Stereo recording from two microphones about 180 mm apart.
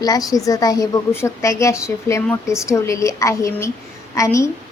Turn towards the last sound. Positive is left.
turn(degrees=15)  # may be behind; listen again after turning